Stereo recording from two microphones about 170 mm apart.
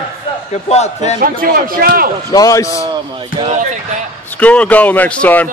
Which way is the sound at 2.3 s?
20° left (ahead or behind).